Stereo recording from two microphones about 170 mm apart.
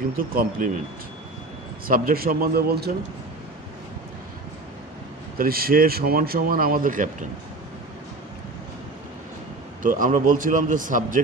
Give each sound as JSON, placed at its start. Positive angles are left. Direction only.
{"t": 0.2, "sound": "speech", "side_deg": -55}
{"t": 1.9, "sound": "speech", "side_deg": -60}
{"t": 5.4, "sound": "speech", "side_deg": -60}
{"t": 9.8, "sound": "speech", "side_deg": -50}